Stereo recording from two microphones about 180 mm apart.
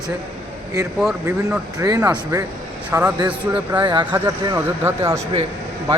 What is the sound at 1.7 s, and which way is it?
A man's voice, 20° right (ahead or behind).